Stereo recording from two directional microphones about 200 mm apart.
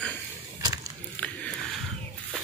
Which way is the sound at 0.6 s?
15° right (ahead or behind).